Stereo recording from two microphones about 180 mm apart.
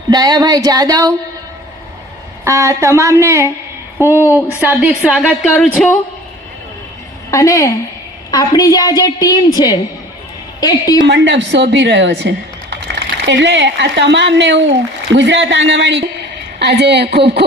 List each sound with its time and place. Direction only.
0.1 s speech: 25° right (ahead or behind)
2.4 s a woman's voice: 15° right (ahead or behind)
5.5 s speech: 10° left (ahead or behind)
7.3 s a woman's voice: 20° left (ahead or behind)
11.0 s a woman's voice: 75° right (ahead or behind)